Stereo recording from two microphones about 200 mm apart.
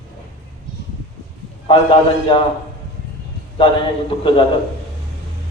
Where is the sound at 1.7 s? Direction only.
25° left (ahead or behind).